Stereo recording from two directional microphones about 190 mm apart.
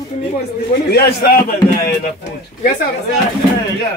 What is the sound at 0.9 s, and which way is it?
Speech, 55° left (ahead or behind).